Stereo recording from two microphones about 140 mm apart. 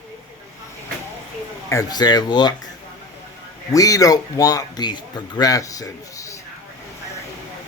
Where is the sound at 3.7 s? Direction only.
25° left (ahead or behind).